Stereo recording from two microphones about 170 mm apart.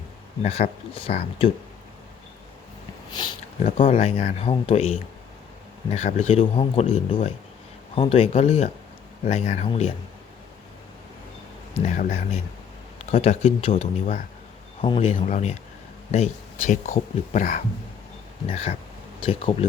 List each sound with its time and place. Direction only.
0.4 s speech: 35° left (ahead or behind)
3.1 s a sound: 25° left (ahead or behind)
3.6 s speech: 35° left (ahead or behind)
11.7 s speech: 35° left (ahead or behind)
18.4 s speech: 35° left (ahead or behind)